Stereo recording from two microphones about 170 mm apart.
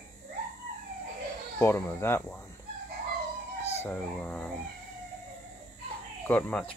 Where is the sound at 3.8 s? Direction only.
10° left (ahead or behind).